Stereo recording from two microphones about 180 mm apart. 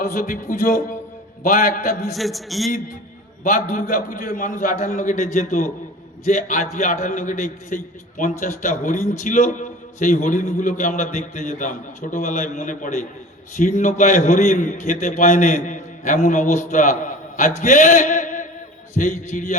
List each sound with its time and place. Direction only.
0.1 s a man's voice: 45° left (ahead or behind)
1.5 s a man's voice: 45° left (ahead or behind)
2.0 s a man's voice: centre (ahead or behind)
3.4 s a man's voice: 45° left (ahead or behind)
17.6 s a sound: 40° left (ahead or behind)
18.9 s a man's voice: 40° left (ahead or behind)